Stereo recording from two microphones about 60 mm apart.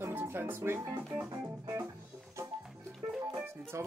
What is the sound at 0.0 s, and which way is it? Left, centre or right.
Speech, right.